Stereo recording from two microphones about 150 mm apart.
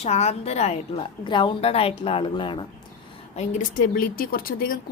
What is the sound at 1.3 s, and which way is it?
A woman's voice, 30° left (ahead or behind).